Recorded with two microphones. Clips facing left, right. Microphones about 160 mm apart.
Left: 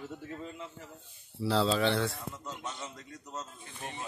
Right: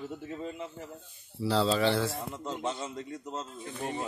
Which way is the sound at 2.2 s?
30° right (ahead or behind).